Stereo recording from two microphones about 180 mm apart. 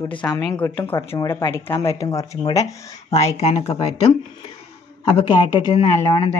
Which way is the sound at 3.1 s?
35° left (ahead or behind).